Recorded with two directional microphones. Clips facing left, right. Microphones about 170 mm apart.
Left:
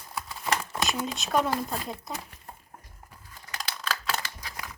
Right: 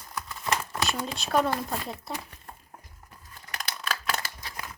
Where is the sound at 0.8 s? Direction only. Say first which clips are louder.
Left 1 dB; centre (ahead or behind).